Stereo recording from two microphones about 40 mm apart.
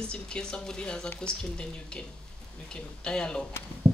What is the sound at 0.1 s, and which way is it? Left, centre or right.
Speech, centre.